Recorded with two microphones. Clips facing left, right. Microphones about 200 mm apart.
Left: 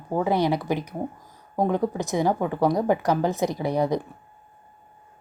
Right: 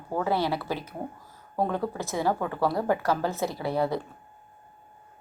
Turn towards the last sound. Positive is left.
turn(degrees=15)  # may be behind; listen again after turning